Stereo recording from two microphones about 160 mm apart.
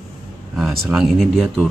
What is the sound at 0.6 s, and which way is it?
Speech, centre (ahead or behind).